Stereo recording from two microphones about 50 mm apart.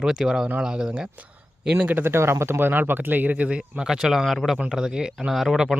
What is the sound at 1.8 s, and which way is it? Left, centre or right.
Speech, right.